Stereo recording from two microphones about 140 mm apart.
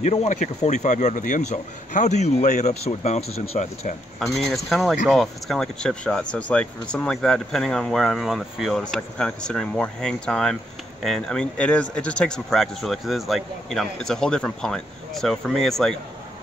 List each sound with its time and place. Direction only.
0.0 s a man's voice: 50° left (ahead or behind)
4.2 s speech: centre (ahead or behind)